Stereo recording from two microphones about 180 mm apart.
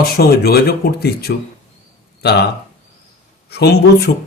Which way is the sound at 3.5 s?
65° left (ahead or behind).